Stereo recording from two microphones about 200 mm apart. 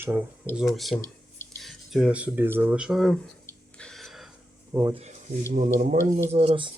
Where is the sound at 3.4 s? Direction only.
5° left (ahead or behind).